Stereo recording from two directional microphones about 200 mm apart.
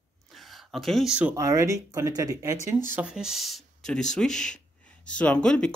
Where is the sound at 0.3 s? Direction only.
Centre (ahead or behind).